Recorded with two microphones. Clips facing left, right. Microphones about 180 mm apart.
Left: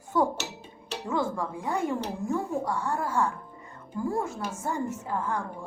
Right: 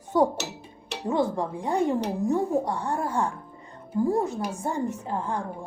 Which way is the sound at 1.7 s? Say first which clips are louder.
Right 5 dB; 20° right (ahead or behind).